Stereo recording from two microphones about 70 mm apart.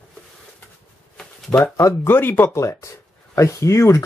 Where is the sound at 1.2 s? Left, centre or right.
Centre.